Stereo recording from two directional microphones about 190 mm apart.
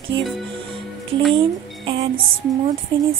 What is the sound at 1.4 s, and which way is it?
Speech, 25° right (ahead or behind).